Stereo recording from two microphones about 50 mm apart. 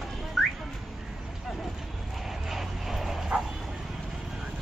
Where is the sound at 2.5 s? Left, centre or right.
Centre.